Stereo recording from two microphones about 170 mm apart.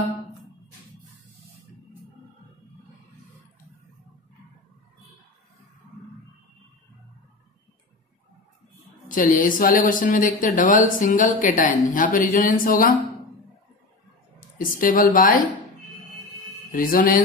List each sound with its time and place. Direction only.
9.1 s speech: 50° left (ahead or behind)
14.6 s a woman's voice: 55° left (ahead or behind)
16.7 s a woman's voice: 55° left (ahead or behind)